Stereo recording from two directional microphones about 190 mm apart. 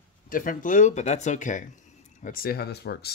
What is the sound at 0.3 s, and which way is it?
Speech, 45° left (ahead or behind).